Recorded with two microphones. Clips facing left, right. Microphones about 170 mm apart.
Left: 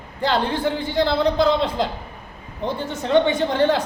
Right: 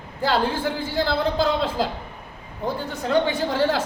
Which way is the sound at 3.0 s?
Centre (ahead or behind).